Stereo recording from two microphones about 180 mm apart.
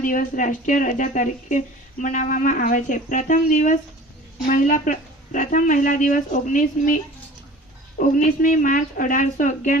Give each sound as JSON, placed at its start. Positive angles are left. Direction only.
{"t": 0.0, "sound": "speech", "side_deg": 45}